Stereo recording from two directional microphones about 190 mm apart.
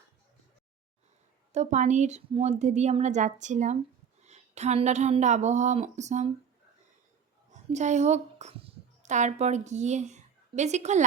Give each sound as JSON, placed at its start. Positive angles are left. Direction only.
{"t": 1.5, "sound": "a woman's voice", "side_deg": -40}
{"t": 7.5, "sound": "speech", "side_deg": -40}